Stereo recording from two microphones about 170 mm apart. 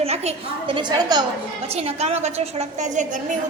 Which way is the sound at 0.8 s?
25° right (ahead or behind).